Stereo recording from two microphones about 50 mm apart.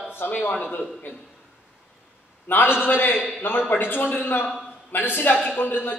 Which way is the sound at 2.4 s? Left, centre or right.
Left.